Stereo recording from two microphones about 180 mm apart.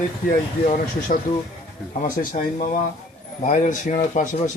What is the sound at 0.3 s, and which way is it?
Speech, 50° left (ahead or behind).